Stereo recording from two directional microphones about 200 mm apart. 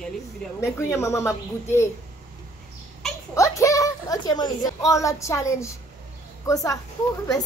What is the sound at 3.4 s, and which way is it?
A woman's voice, 15° left (ahead or behind).